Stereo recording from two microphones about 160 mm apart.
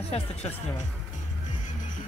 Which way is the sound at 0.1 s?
40° left (ahead or behind).